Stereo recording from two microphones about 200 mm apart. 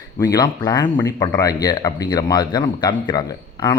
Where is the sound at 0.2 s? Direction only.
20° left (ahead or behind).